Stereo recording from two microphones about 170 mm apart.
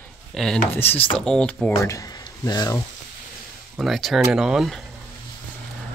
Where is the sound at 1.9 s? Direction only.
20° left (ahead or behind).